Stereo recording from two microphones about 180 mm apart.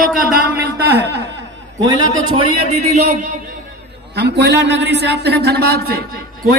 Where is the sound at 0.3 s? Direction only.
65° right (ahead or behind).